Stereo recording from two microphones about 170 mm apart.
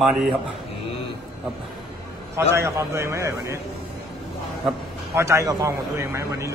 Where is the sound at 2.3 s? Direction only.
15° right (ahead or behind).